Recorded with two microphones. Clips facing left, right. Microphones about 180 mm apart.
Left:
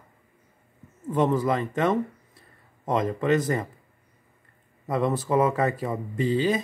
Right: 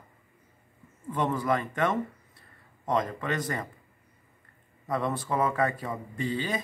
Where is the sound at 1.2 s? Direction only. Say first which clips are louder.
Left 4 dB; 20° left (ahead or behind).